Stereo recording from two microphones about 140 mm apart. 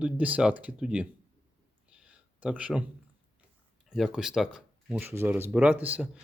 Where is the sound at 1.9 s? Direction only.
10° right (ahead or behind).